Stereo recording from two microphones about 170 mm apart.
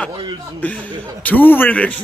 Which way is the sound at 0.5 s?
10° left (ahead or behind).